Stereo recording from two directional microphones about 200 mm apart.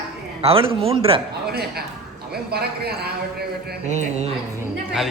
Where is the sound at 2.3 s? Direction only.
50° right (ahead or behind).